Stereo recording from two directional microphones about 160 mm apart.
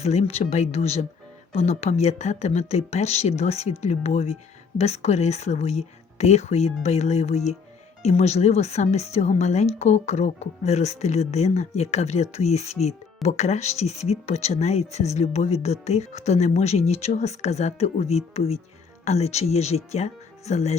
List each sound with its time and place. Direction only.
0.0 s speech: 40° left (ahead or behind)